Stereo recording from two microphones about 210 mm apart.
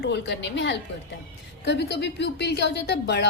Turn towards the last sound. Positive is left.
turn(degrees=55)  # may be behind; listen again after turning